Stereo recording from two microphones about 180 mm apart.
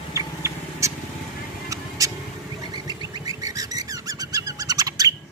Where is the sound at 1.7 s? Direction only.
20° right (ahead or behind).